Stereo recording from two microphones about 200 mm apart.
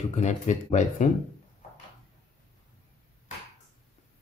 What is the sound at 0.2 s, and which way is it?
Speech, 35° left (ahead or behind).